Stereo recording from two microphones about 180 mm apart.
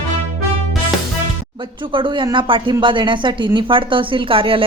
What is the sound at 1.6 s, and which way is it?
Speech, 30° right (ahead or behind).